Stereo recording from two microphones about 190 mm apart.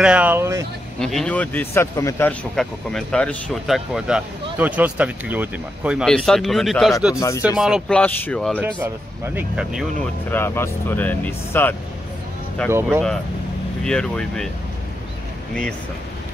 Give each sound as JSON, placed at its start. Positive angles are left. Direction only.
{"t": 0.0, "sound": "speech", "side_deg": -5}
{"t": 0.9, "sound": "speech", "side_deg": 5}
{"t": 2.5, "sound": "speech", "side_deg": 0}
{"t": 7.2, "sound": "speech", "side_deg": 15}
{"t": 7.4, "sound": "speech", "side_deg": -5}
{"t": 8.8, "sound": "speech", "side_deg": -10}
{"t": 9.9, "sound": "speech", "side_deg": 10}
{"t": 13.8, "sound": "speech", "side_deg": 5}